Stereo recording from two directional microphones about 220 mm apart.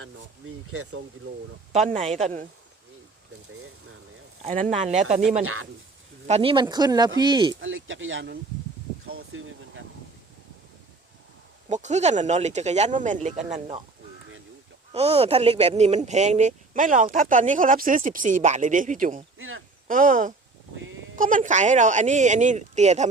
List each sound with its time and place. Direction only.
1.7 s speech: 30° right (ahead or behind)
4.4 s speech: 35° right (ahead or behind)
6.2 s speech: 25° right (ahead or behind)
7.5 s speech: 60° right (ahead or behind)
9.0 s a sound: 70° right (ahead or behind)
11.7 s speech: 30° right (ahead or behind)
14.9 s speech: 25° right (ahead or behind)
19.4 s speech: 65° right (ahead or behind)
19.9 s speech: 40° right (ahead or behind)